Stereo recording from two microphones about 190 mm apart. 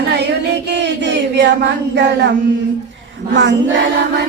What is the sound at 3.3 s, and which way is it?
Music, 70° right (ahead or behind).